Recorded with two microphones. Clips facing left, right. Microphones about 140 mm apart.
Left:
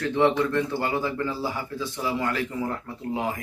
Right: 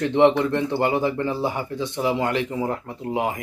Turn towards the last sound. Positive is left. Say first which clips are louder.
# right 4 dB
turn(degrees=-20)  # may be behind; listen again after turning